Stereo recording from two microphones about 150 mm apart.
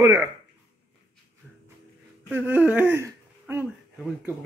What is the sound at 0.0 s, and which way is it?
Speech, 20° right (ahead or behind).